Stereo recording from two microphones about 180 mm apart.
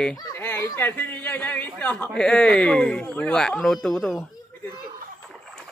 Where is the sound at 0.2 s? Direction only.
15° left (ahead or behind).